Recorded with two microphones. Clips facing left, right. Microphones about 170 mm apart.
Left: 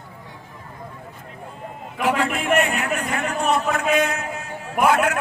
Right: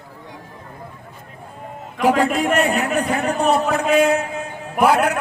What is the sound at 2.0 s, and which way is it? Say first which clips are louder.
A man's voice: right 5 dB; 40° right (ahead or behind).